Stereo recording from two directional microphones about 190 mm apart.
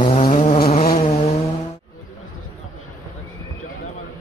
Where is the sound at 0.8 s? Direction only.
45° left (ahead or behind).